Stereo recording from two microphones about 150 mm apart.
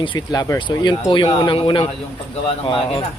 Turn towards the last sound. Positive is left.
turn(degrees=35)  # may be behind; listen again after turning